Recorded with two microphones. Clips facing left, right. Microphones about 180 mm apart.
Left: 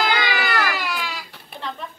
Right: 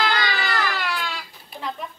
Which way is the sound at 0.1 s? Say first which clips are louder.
Left 2 dB; 60° left (ahead or behind).